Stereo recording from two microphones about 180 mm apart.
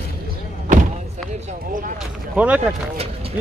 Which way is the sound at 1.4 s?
50° right (ahead or behind).